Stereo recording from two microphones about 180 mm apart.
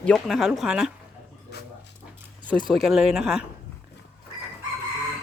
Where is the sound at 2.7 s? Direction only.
Centre (ahead or behind).